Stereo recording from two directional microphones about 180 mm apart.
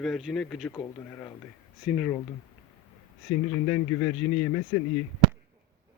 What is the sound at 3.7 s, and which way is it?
Speech, 15° left (ahead or behind).